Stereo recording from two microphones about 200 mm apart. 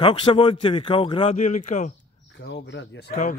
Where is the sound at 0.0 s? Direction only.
25° left (ahead or behind).